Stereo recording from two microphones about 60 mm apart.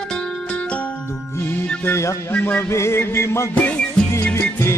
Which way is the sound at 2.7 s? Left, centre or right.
Left.